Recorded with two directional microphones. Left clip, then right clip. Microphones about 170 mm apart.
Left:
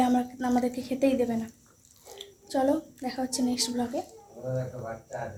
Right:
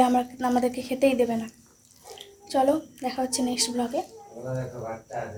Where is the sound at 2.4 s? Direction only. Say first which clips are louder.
Right 4 dB; 10° right (ahead or behind).